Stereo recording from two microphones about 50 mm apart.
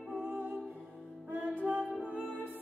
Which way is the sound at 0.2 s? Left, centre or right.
Right.